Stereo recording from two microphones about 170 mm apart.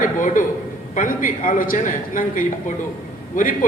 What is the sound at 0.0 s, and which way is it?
A man's voice, 50° left (ahead or behind).